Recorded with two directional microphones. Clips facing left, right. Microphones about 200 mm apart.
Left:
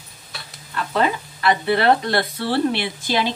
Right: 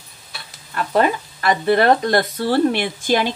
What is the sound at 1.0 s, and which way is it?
Speech, 45° right (ahead or behind).